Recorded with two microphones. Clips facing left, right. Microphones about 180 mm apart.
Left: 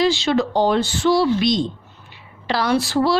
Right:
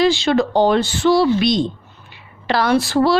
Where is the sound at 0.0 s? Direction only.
55° right (ahead or behind).